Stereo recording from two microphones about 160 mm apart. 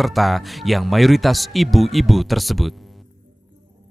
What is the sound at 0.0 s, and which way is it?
Speech, centre (ahead or behind).